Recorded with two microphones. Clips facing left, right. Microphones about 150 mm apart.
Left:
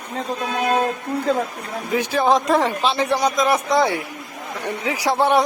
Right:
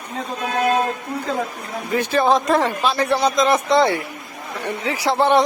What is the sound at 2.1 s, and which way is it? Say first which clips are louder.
A man's voice: right 1 dB; 15° left (ahead or behind).